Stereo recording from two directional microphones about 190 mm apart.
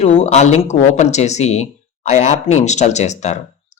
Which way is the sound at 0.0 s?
30° left (ahead or behind).